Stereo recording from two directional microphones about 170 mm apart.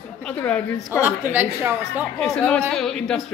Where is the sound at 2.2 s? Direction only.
5° left (ahead or behind).